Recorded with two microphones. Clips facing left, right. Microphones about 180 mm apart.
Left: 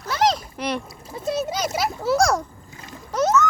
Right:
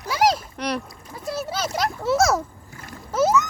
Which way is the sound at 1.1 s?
20° left (ahead or behind).